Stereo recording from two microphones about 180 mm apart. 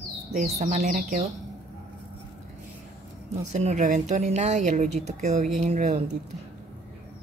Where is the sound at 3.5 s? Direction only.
40° right (ahead or behind).